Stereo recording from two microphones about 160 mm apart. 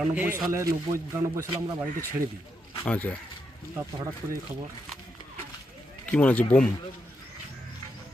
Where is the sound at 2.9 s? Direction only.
10° left (ahead or behind).